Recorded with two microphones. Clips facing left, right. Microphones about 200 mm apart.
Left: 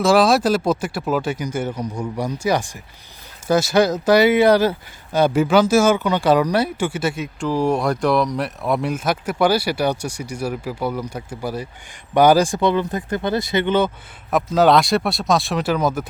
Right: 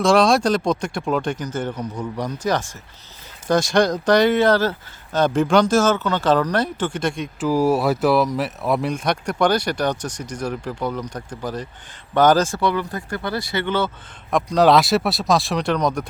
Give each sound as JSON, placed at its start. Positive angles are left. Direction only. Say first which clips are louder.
{"t": 0.0, "sound": "speech", "louder": "left 1 dB", "side_deg": 5}
{"t": 7.4, "sound": "speech", "louder": "right 1 dB", "side_deg": -5}
{"t": 14.3, "sound": "speech", "louder": "even", "side_deg": 5}